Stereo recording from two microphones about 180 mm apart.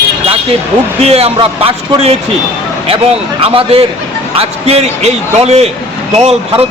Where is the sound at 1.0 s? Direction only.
35° right (ahead or behind).